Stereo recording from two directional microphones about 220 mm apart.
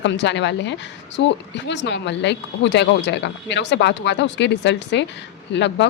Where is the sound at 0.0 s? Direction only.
55° left (ahead or behind).